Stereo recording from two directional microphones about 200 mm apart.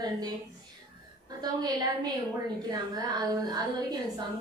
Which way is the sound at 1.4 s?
20° right (ahead or behind).